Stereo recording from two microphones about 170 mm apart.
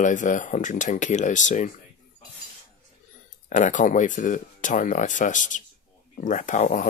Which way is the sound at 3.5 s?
45° left (ahead or behind).